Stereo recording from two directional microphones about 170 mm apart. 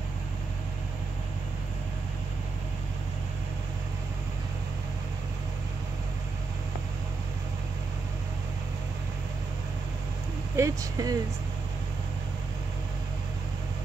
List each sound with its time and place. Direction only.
10.5 s speech: 20° right (ahead or behind)